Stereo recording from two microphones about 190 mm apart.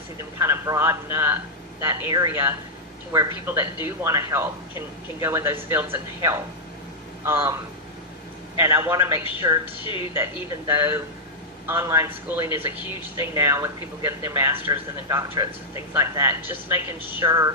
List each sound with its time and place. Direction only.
0.2 s speech: 15° right (ahead or behind)
8.5 s speech: 15° right (ahead or behind)
9.8 s a woman's voice: 25° left (ahead or behind)
10.7 s speech: 15° right (ahead or behind)